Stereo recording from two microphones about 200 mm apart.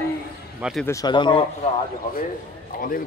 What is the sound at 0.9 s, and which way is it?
Speech, 20° left (ahead or behind).